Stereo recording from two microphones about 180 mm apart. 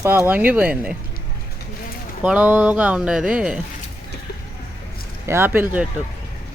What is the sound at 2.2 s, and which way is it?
Speech, 10° right (ahead or behind).